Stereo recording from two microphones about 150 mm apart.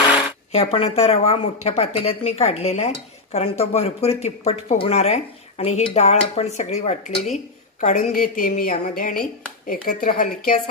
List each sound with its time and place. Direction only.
0.5 s speech: 40° left (ahead or behind)
7.8 s a woman's voice: 60° left (ahead or behind)